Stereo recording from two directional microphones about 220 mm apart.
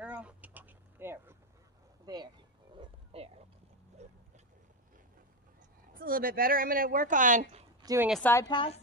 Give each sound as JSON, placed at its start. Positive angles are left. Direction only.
{"t": 0.0, "sound": "a sound", "side_deg": -5}
{"t": 5.9, "sound": "speech", "side_deg": -40}
{"t": 7.8, "sound": "speech", "side_deg": -15}
{"t": 8.1, "sound": "a woman's voice", "side_deg": 10}